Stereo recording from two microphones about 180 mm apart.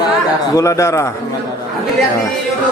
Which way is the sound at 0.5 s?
15° left (ahead or behind).